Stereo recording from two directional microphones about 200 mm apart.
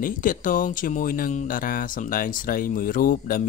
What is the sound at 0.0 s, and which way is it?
Speech, 45° left (ahead or behind).